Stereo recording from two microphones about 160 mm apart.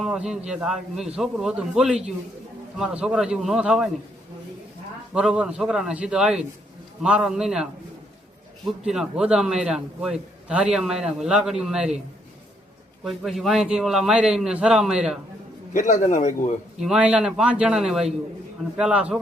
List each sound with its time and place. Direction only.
0.0 s a man's voice: 5° right (ahead or behind)
5.1 s a man's voice: 5° right (ahead or behind)
13.1 s a man's voice: centre (ahead or behind)
15.7 s a man's voice: 50° left (ahead or behind)
16.8 s a man's voice: 5° right (ahead or behind)